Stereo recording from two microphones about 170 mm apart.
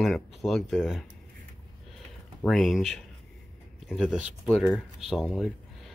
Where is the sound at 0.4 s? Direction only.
Centre (ahead or behind).